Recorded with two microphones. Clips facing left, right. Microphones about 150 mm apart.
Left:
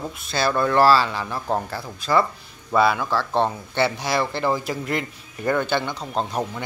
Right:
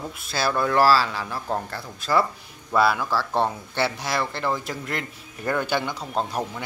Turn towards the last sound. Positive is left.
turn(degrees=-5)  # may be behind; listen again after turning